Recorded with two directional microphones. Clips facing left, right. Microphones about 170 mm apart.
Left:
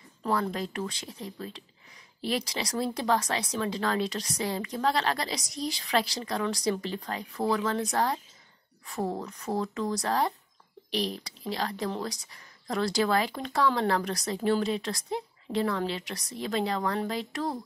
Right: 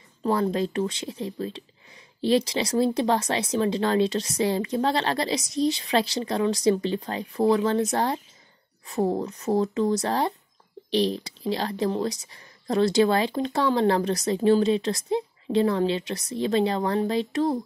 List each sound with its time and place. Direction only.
0.2 s speech: 25° right (ahead or behind)